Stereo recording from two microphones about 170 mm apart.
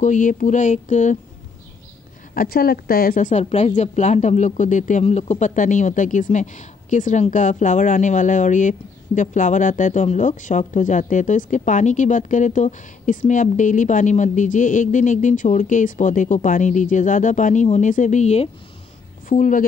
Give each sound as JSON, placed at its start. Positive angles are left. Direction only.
{"t": 0.0, "sound": "a woman's voice", "side_deg": 45}
{"t": 2.3, "sound": "a woman's voice", "side_deg": 60}
{"t": 19.2, "sound": "speech", "side_deg": 50}